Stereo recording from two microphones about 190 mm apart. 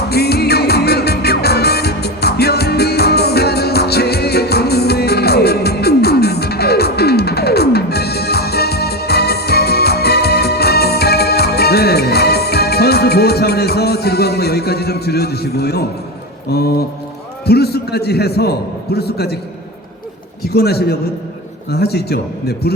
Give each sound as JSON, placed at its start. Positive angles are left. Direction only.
{"t": 0.1, "sound": "music", "side_deg": 55}
{"t": 16.5, "sound": "a man's voice", "side_deg": 55}
{"t": 20.5, "sound": "a man's voice", "side_deg": 55}